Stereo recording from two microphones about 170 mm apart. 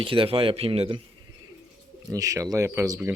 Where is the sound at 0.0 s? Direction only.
30° right (ahead or behind).